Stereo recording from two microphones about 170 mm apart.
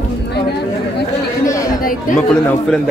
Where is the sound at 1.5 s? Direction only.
20° left (ahead or behind).